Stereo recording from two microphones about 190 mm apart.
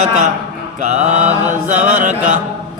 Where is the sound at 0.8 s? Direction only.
40° right (ahead or behind).